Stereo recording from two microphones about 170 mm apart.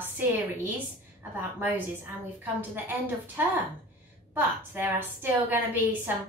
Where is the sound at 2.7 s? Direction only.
10° right (ahead or behind).